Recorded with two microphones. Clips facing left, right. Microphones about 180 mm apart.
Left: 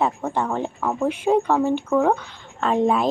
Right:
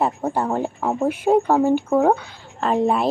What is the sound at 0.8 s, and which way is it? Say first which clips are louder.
Speech: right 2 dB; 25° right (ahead or behind).